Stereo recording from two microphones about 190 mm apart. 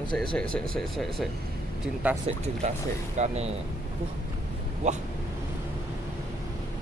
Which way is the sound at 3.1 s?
35° right (ahead or behind).